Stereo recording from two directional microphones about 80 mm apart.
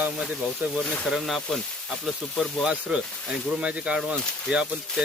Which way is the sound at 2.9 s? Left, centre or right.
Centre.